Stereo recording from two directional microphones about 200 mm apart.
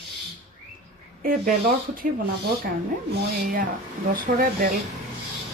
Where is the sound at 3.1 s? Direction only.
45° right (ahead or behind).